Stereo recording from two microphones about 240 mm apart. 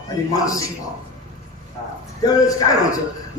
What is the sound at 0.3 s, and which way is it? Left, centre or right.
Speech, centre.